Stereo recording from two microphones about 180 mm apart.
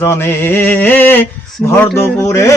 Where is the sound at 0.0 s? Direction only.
15° left (ahead or behind).